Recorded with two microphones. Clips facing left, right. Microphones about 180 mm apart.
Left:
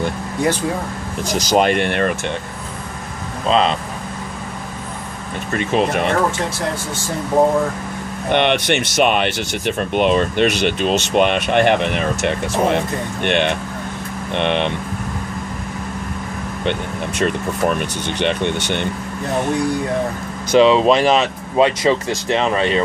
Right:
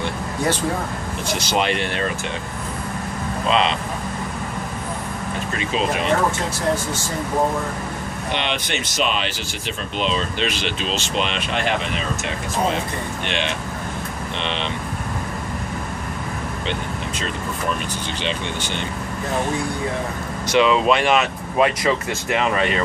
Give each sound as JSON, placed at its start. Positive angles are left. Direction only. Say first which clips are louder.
{"t": 1.2, "sound": "speech", "louder": "left 6 dB", "side_deg": 40}
{"t": 3.4, "sound": "speech", "louder": "left 4 dB", "side_deg": 40}
{"t": 5.7, "sound": "speech", "louder": "left 4 dB", "side_deg": 60}
{"t": 8.3, "sound": "speech", "louder": "left 10 dB", "side_deg": 60}
{"t": 17.2, "sound": "speech", "louder": "left 11 dB", "side_deg": 55}
{"t": 20.5, "sound": "speech", "louder": "left 5 dB", "side_deg": 30}